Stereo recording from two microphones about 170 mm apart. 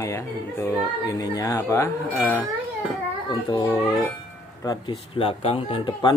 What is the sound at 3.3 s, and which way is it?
A child's voice, 25° left (ahead or behind).